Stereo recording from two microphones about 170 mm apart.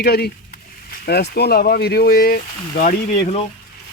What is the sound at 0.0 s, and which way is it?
Speech, 70° left (ahead or behind).